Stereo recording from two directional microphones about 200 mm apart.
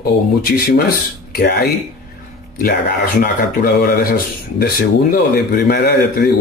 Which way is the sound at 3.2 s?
50° left (ahead or behind).